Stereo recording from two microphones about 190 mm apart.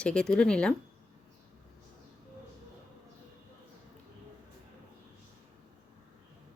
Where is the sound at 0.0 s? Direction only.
5° left (ahead or behind).